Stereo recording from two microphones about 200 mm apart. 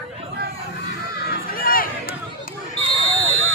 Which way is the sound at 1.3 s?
45° left (ahead or behind).